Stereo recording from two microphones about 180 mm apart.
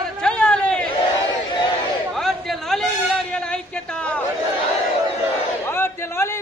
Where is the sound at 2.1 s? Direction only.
Centre (ahead or behind).